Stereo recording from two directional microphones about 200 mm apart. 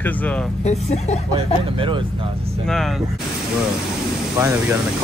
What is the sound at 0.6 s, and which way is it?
Speech, 35° left (ahead or behind).